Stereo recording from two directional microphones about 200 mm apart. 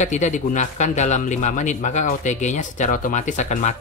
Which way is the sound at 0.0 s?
35° left (ahead or behind).